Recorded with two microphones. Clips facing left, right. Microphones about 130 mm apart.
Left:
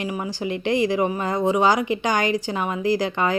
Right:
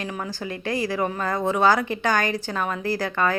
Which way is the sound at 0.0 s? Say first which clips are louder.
Left 4 dB; 10° left (ahead or behind).